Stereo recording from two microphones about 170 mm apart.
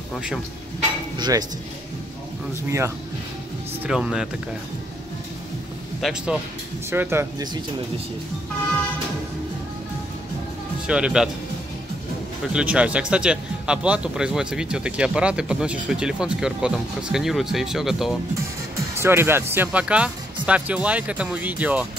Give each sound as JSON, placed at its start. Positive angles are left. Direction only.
{"t": 0.1, "sound": "speech", "side_deg": -5}
{"t": 1.1, "sound": "speech", "side_deg": -25}
{"t": 3.8, "sound": "speech", "side_deg": -5}
{"t": 5.9, "sound": "speech", "side_deg": 0}
{"t": 6.9, "sound": "speech", "side_deg": -15}
{"t": 10.9, "sound": "speech", "side_deg": -5}
{"t": 12.5, "sound": "speech", "side_deg": -5}
{"t": 18.9, "sound": "speech", "side_deg": -15}